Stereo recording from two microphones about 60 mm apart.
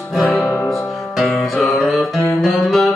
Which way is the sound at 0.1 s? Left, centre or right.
Centre.